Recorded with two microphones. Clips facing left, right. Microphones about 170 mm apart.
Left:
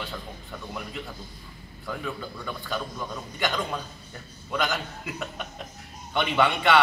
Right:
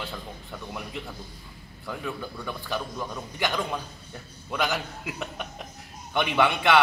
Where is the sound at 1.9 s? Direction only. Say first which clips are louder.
Even; 15° right (ahead or behind).